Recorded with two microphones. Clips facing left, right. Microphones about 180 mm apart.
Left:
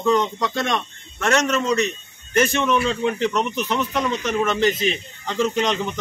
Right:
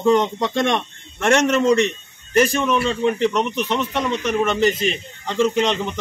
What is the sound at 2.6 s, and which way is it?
A man's voice, centre (ahead or behind).